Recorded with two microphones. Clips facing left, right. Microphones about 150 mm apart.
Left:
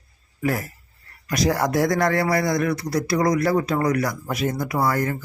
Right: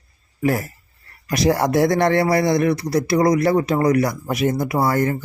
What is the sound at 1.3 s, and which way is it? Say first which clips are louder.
Speech: right 3 dB; 25° right (ahead or behind).